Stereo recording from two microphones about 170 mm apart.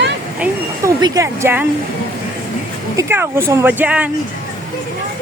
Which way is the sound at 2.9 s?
15° right (ahead or behind).